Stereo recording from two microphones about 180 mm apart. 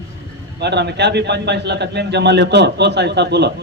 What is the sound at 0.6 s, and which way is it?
A man's voice, 70° right (ahead or behind).